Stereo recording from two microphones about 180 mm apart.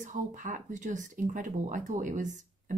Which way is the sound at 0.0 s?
45° right (ahead or behind).